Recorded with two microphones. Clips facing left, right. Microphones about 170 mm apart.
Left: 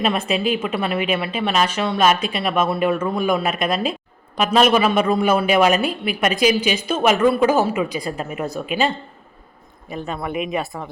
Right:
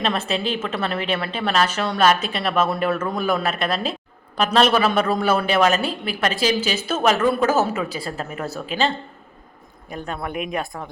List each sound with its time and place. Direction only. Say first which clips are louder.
0.0 s a woman's voice: left 3 dB; 10° left (ahead or behind)
9.9 s speech: left 3 dB; centre (ahead or behind)